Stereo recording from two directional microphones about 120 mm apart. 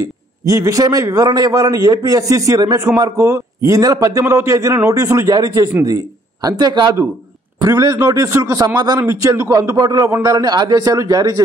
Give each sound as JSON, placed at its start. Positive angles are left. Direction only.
{"t": 0.0, "sound": "a man's voice", "side_deg": -30}